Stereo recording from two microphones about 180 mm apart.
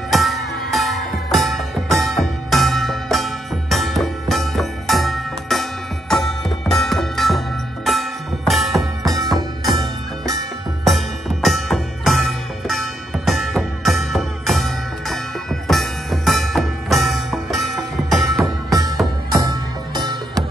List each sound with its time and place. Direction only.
0.1 s music: centre (ahead or behind)
9.0 s music: 20° right (ahead or behind)
10.8 s music: centre (ahead or behind)
18.7 s music: 20° right (ahead or behind)